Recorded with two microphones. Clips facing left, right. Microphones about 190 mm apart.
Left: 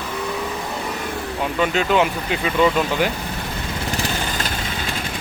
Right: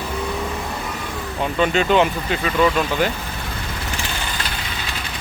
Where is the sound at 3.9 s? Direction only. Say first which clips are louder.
Left 5 dB; 40° left (ahead or behind).